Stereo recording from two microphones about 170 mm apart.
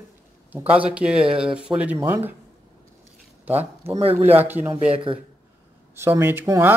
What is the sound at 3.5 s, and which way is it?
Speech, 35° right (ahead or behind).